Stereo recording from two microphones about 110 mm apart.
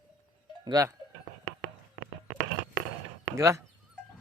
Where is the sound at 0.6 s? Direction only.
35° right (ahead or behind).